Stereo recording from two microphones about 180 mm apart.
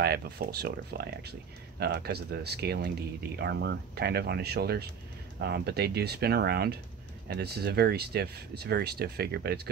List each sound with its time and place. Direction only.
0.0 s speech: 60° right (ahead or behind)